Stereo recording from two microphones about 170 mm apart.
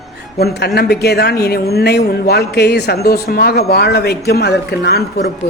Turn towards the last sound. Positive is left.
turn(degrees=75)  # may be behind; listen again after turning